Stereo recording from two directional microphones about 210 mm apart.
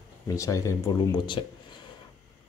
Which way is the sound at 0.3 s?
15° left (ahead or behind).